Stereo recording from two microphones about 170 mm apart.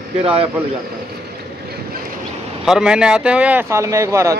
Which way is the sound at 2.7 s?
5° right (ahead or behind).